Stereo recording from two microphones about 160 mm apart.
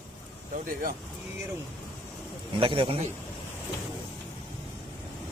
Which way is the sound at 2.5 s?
35° right (ahead or behind).